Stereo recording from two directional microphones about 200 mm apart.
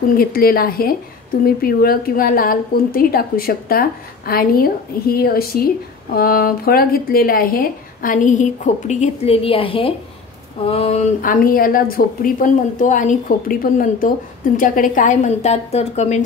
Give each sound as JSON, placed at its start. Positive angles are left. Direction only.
{"t": 0.2, "sound": "a woman's voice", "side_deg": 45}
{"t": 11.1, "sound": "a woman's voice", "side_deg": 45}